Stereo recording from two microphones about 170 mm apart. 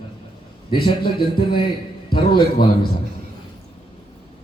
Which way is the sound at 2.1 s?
25° left (ahead or behind).